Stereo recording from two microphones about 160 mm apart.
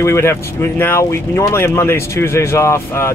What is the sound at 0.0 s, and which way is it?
Speech, 15° left (ahead or behind).